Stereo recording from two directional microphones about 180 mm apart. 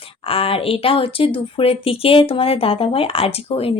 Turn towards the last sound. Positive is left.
turn(degrees=30)  # may be behind; listen again after turning